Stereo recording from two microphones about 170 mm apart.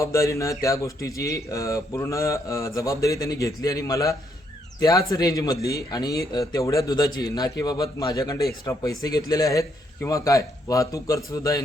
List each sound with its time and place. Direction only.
0.0 s speech: 20° left (ahead or behind)